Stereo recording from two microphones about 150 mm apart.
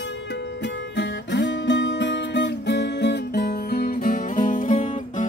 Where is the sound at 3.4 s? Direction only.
90° left; by 5.2 s 55° left (ahead or behind).